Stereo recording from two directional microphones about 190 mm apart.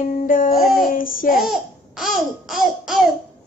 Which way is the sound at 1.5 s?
Centre (ahead or behind).